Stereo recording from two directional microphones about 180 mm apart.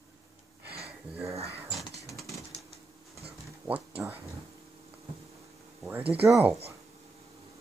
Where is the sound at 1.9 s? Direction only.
15° left (ahead or behind).